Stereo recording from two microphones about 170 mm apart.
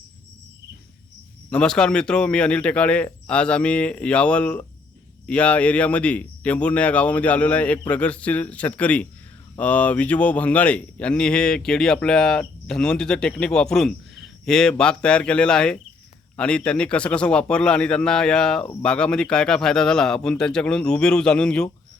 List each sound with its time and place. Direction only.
1.5 s speech: 5° left (ahead or behind)